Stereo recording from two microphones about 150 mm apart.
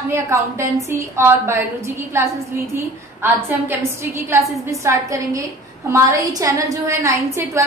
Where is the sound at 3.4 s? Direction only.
15° right (ahead or behind).